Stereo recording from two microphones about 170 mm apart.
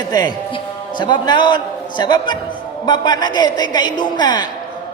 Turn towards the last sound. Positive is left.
turn(degrees=25)  # may be behind; listen again after turning